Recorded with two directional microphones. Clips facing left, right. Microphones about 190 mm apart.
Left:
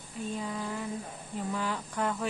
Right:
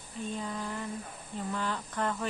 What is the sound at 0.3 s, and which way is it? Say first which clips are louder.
Female singing: left 2 dB; 5° left (ahead or behind).